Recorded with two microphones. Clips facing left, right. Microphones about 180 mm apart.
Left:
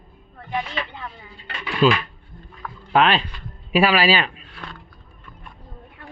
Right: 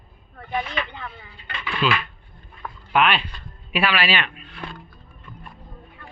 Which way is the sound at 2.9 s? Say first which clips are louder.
Left 3 dB; 35° left (ahead or behind).